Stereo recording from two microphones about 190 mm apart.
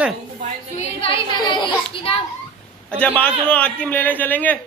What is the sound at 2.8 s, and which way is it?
A man's voice, 5° left (ahead or behind).